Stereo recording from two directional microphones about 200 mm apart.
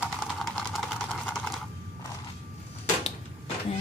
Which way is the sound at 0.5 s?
Centre (ahead or behind).